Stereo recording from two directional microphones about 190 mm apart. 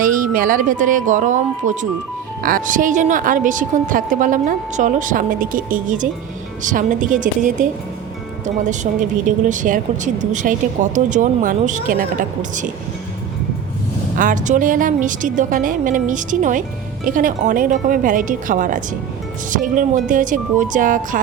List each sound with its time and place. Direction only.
0.0 s a woman's voice: 45° right (ahead or behind)
14.2 s a woman's voice: 45° right (ahead or behind)